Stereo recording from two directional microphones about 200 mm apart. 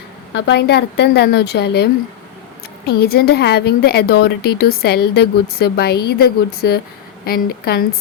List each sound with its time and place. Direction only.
0.3 s a woman's voice: 60° left (ahead or behind)